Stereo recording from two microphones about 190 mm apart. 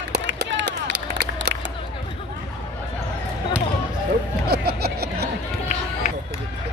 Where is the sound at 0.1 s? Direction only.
60° right (ahead or behind).